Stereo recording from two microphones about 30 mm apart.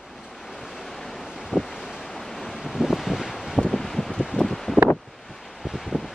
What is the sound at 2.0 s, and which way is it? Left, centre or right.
Waves, centre.